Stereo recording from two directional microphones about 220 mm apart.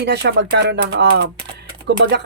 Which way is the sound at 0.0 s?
50° right (ahead or behind).